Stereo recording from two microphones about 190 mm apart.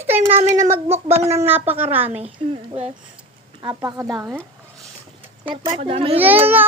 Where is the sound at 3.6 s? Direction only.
20° right (ahead or behind).